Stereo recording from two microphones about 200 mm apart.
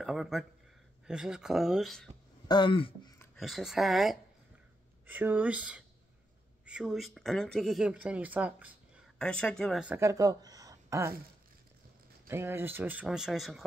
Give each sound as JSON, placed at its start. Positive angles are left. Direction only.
{"t": 0.0, "sound": "speech", "side_deg": 0}
{"t": 2.4, "sound": "speech", "side_deg": 20}
{"t": 3.3, "sound": "speech", "side_deg": 0}
{"t": 9.2, "sound": "speech", "side_deg": 5}
{"t": 12.3, "sound": "speech", "side_deg": -10}